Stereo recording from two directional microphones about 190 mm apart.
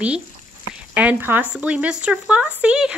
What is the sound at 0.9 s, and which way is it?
Speech, 10° right (ahead or behind).